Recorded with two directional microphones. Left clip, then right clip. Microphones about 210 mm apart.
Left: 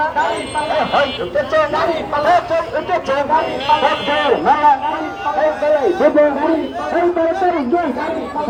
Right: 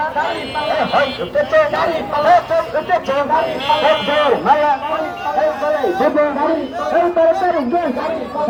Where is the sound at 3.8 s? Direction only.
Centre (ahead or behind).